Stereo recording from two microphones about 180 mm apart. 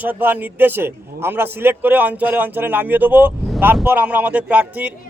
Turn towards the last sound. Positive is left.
turn(degrees=-10)  # may be behind; listen again after turning